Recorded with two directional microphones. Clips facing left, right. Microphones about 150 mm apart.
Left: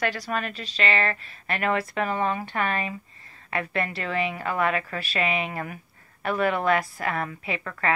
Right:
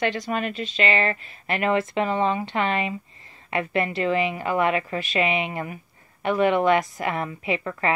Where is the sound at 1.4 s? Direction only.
30° right (ahead or behind).